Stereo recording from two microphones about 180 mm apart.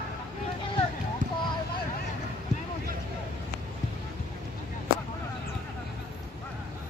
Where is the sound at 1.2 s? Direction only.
45° right (ahead or behind).